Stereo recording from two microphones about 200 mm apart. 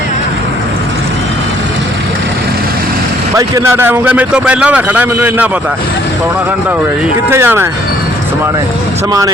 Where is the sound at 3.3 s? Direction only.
15° right (ahead or behind).